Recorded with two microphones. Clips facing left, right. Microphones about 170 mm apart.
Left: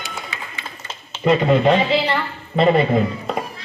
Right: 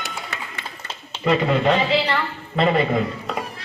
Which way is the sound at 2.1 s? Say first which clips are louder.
Left 1 dB; 25° left (ahead or behind).